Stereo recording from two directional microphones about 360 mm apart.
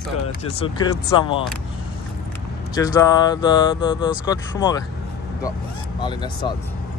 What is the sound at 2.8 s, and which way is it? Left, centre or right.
Speech, centre.